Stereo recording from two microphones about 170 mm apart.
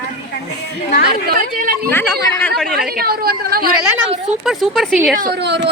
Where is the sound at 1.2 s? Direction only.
65° right (ahead or behind).